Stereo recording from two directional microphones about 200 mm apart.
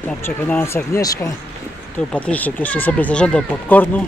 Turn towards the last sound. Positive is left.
turn(degrees=5)  # may be behind; listen again after turning